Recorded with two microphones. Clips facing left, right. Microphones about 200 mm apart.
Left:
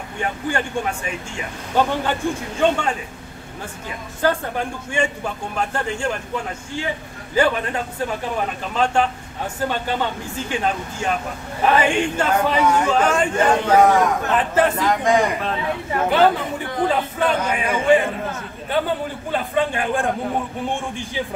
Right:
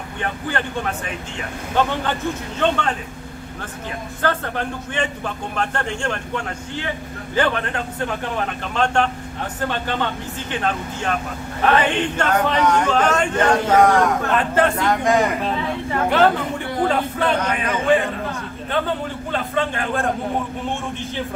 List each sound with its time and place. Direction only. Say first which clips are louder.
0.2 s speech: left 2 dB; 10° left (ahead or behind)
4.2 s speech: left 2 dB; 10° left (ahead or behind)
19.3 s speech: left 2 dB; 15° left (ahead or behind)